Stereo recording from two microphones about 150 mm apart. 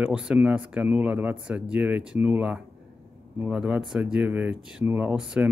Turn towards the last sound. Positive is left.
turn(degrees=-5)  # may be behind; listen again after turning